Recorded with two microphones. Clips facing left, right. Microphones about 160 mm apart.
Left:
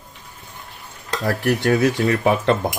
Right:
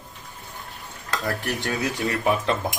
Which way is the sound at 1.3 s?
70° left (ahead or behind).